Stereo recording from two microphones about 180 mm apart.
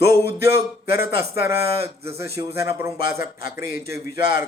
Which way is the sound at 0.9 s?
50° left (ahead or behind).